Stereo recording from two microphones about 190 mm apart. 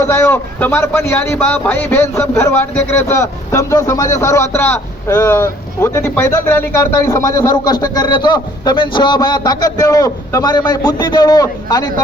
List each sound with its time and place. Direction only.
0.0 s speech: 15° left (ahead or behind)